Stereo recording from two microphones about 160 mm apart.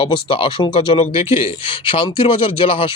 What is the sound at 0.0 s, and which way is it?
Speech, 30° left (ahead or behind).